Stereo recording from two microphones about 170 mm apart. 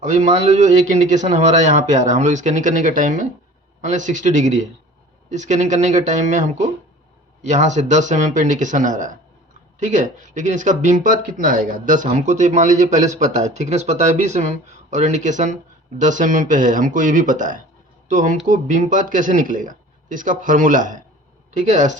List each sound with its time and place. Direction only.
0.0 s speech: 45° right (ahead or behind)